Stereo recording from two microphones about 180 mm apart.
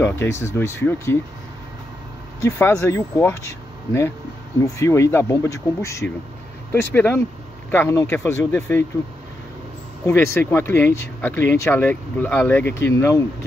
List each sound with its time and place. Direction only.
0.0 s speech: 15° left (ahead or behind)
2.4 s speech: 15° left (ahead or behind)
4.6 s speech: 15° left (ahead or behind)
10.0 s speech: 15° left (ahead or behind)